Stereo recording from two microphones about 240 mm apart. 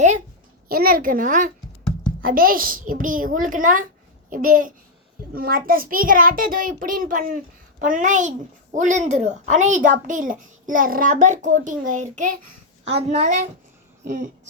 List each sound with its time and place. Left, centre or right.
0.7 s a woman's voice: right
12.2 s a child's voice: right
12.8 s a woman's voice: right